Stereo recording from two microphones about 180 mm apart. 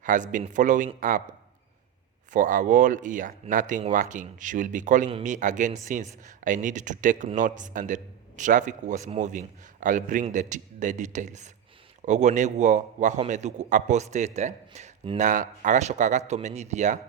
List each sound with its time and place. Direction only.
0.0 s a man's voice: 45° right (ahead or behind)